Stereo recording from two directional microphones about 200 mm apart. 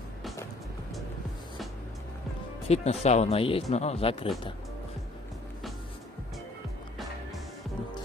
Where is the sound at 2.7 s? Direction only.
30° left (ahead or behind).